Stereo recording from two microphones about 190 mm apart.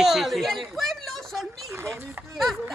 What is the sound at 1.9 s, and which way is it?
Speech, centre (ahead or behind).